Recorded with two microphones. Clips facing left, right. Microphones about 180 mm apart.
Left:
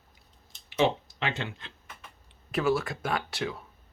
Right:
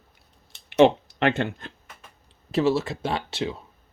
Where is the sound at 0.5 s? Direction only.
65° right (ahead or behind); by 1.7 s 45° right (ahead or behind).